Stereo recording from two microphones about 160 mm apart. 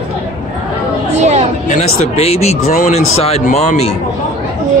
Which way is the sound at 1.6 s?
45° left (ahead or behind).